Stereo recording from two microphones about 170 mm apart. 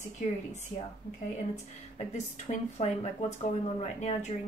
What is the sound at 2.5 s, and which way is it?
Speech, 40° left (ahead or behind).